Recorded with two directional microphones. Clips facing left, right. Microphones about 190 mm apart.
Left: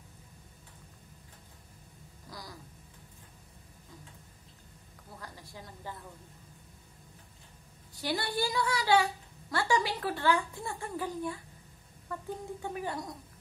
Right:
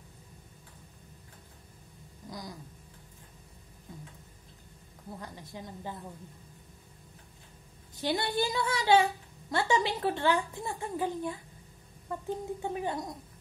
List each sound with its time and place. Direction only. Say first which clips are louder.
2.2 s a sound: right 5 dB; 20° right (ahead or behind)
5.2 s a woman's voice: right 2 dB; 20° right (ahead or behind)
7.9 s a woman's voice: right 3 dB; 20° right (ahead or behind)